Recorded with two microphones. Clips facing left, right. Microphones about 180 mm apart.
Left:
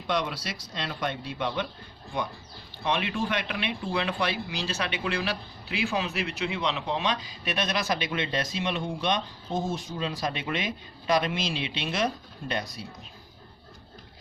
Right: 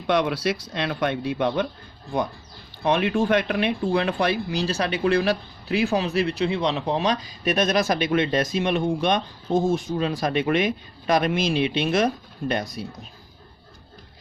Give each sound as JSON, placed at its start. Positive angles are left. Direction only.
{"t": 0.1, "sound": "speech", "side_deg": -60}